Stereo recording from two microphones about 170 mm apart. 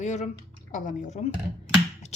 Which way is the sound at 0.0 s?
45° left (ahead or behind).